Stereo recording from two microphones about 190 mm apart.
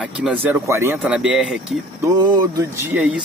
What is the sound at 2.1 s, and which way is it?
Speech, 20° right (ahead or behind).